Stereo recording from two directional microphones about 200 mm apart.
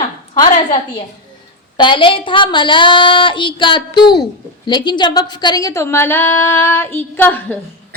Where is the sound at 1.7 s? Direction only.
25° left (ahead or behind).